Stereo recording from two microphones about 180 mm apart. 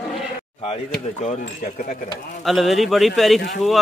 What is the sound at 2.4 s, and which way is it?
Speech, centre (ahead or behind).